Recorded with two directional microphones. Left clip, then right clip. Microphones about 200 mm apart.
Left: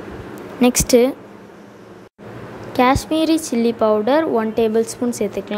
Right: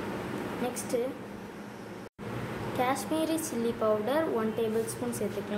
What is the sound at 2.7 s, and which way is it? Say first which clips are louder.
A woman's voice: left 14 dB; 40° left (ahead or behind).